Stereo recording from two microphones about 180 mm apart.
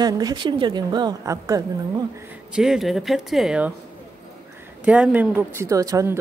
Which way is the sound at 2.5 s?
5° right (ahead or behind).